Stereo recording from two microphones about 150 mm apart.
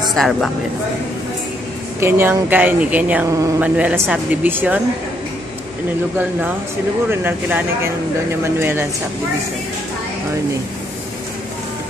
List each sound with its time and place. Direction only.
0.1 s speech: centre (ahead or behind)
2.0 s speech: 15° right (ahead or behind)
3.3 s speech: 20° right (ahead or behind)
3.6 s speech: 10° right (ahead or behind)
7.1 s speech: 10° right (ahead or behind)